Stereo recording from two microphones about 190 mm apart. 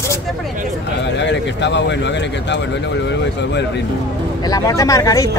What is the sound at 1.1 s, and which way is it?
Speech, 65° left (ahead or behind).